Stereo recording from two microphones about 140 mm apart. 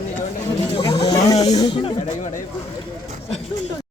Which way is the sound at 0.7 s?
40° left (ahead or behind).